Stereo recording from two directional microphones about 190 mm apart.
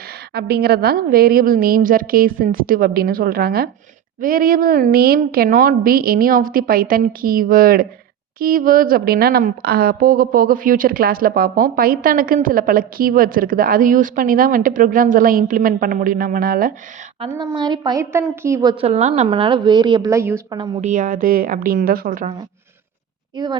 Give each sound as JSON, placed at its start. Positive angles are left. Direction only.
{"t": 0.3, "sound": "a woman's voice", "side_deg": -55}
{"t": 17.2, "sound": "a woman's voice", "side_deg": -25}
{"t": 18.7, "sound": "a woman's voice", "side_deg": -30}
{"t": 20.8, "sound": "a woman's voice", "side_deg": -45}